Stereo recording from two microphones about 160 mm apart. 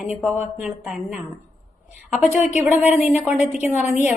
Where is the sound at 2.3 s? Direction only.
45° left (ahead or behind).